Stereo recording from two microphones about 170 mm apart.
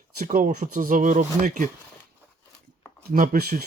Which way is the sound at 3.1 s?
55° right (ahead or behind).